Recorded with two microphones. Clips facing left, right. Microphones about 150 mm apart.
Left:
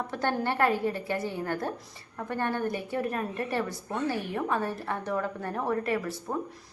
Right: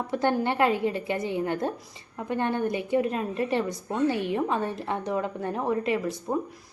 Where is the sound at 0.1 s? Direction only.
15° right (ahead or behind).